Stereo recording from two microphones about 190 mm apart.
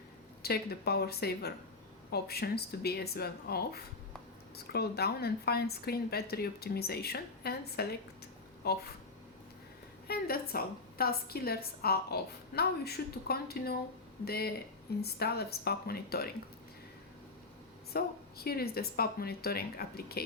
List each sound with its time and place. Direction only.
0.4 s speech: 55° left (ahead or behind)
10.1 s a woman's voice: 55° left (ahead or behind)
17.9 s a woman's voice: 55° left (ahead or behind)